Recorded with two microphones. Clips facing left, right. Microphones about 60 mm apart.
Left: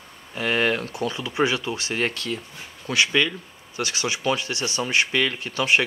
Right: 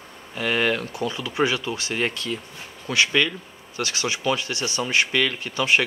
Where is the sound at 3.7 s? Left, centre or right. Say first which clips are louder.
Even; left.